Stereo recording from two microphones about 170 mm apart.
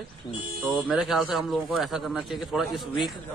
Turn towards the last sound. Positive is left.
turn(degrees=0)  # may be behind; listen again after turning